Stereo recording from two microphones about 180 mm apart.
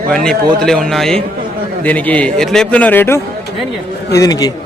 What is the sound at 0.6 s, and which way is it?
A man's voice, 5° left (ahead or behind).